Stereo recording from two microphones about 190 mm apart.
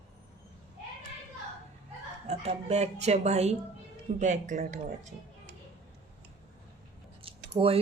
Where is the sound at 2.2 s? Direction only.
35° right (ahead or behind).